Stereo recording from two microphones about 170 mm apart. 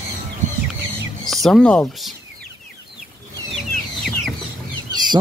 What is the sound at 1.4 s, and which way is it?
Speech, 5° left (ahead or behind).